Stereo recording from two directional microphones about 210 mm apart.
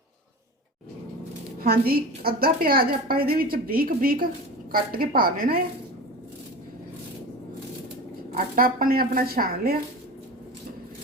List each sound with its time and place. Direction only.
1.5 s a woman's voice: 45° right (ahead or behind)
8.5 s a woman's voice: 45° right (ahead or behind)